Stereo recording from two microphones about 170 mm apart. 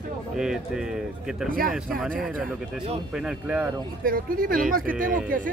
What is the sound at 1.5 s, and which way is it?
Speech, 55° right (ahead or behind).